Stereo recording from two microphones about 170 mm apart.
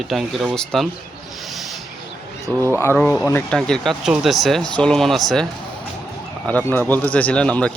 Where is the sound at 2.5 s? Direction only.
10° left (ahead or behind).